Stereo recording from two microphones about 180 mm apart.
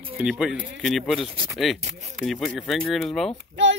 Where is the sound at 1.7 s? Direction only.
40° right (ahead or behind).